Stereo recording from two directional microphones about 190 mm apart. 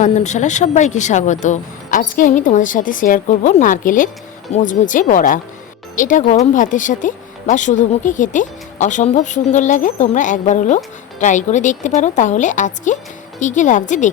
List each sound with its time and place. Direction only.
0.0 s a woman's voice: 40° left (ahead or behind)